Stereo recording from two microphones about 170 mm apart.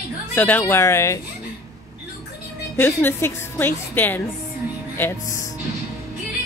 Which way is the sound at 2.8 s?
10° left (ahead or behind).